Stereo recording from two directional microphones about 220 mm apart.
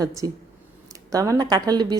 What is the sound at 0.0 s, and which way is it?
A woman's voice, 15° right (ahead or behind).